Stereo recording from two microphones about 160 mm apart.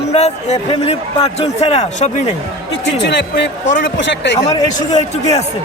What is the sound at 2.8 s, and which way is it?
Speech, 90° left.